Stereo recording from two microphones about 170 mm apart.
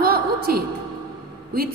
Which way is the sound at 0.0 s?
65° right (ahead or behind).